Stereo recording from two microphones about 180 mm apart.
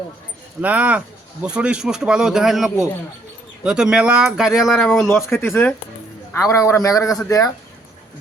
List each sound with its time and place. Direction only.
0.6 s speech: 10° right (ahead or behind)
5.0 s a man's voice: 15° left (ahead or behind)